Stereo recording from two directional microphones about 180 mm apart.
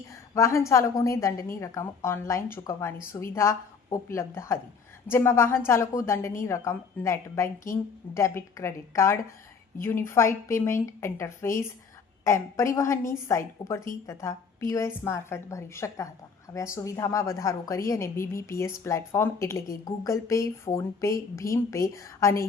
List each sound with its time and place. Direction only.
0.3 s a woman's voice: 15° left (ahead or behind)